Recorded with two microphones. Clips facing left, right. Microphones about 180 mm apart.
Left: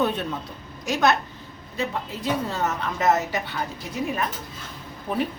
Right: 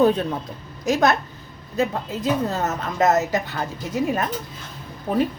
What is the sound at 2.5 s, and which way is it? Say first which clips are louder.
A woman's voice: right 2 dB; 40° right (ahead or behind).